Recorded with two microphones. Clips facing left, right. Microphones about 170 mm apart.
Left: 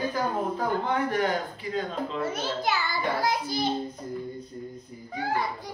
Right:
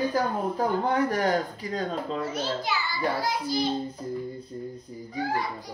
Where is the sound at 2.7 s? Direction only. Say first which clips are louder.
Left 3 dB; 50° left (ahead or behind).